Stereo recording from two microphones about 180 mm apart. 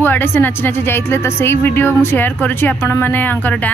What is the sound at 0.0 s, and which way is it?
A woman's voice, 10° left (ahead or behind).